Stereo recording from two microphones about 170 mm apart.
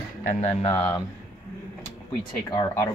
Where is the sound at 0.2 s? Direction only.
45° left (ahead or behind).